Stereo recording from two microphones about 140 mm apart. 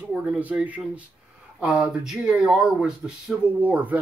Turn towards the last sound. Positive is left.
turn(degrees=-10)  # may be behind; listen again after turning